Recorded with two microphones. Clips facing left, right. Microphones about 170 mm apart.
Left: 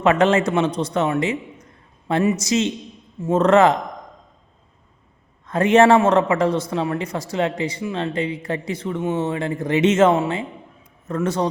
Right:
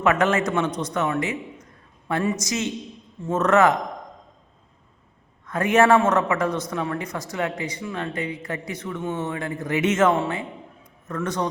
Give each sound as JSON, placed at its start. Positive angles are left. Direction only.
{"t": 0.0, "sound": "a woman's voice", "side_deg": 30}
{"t": 5.5, "sound": "speech", "side_deg": 30}